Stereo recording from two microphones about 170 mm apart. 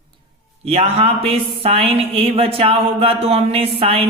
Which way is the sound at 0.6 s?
35° right (ahead or behind).